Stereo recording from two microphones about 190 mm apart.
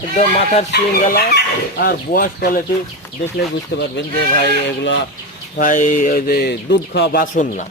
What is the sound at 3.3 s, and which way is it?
Speech, 60° left (ahead or behind).